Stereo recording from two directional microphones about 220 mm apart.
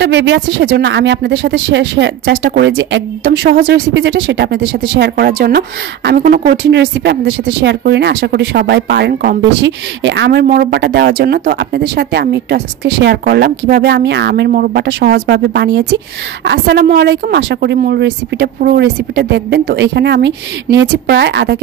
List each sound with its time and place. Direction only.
0.0 s a woman's voice: 55° right (ahead or behind)